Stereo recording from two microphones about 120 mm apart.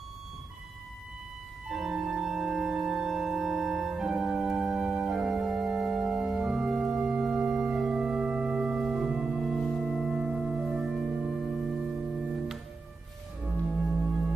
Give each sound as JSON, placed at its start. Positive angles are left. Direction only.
{"t": 1.7, "sound": "organ", "side_deg": -5}